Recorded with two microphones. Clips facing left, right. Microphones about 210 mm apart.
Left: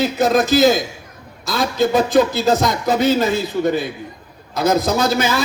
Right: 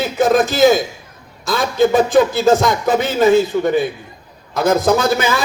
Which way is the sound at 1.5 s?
50° right (ahead or behind).